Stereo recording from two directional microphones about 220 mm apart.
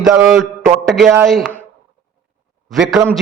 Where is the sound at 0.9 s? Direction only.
Centre (ahead or behind).